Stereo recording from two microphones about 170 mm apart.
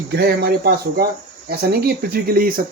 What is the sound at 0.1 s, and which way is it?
Speech, 70° right (ahead or behind).